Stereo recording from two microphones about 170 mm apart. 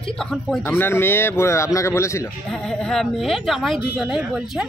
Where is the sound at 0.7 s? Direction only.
15° left (ahead or behind).